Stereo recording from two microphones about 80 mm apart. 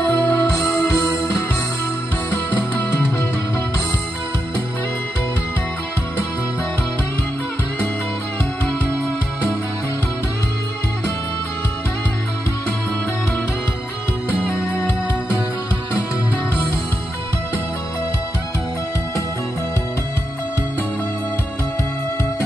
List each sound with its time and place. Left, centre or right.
0.0 s music: centre
0.3 s music: left